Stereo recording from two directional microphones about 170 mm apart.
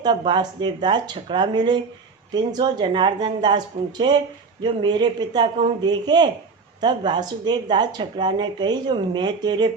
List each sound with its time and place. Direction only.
0.0 s speech: 25° right (ahead or behind)